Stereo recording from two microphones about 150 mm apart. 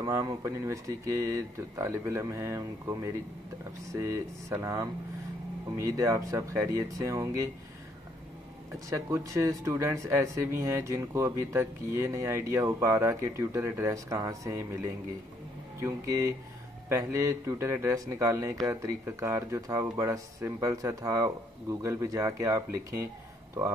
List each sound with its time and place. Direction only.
0.0 s speech: 20° right (ahead or behind)
8.9 s speech: 20° right (ahead or behind)